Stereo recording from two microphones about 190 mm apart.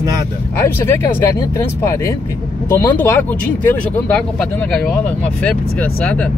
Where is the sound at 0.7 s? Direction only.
10° left (ahead or behind).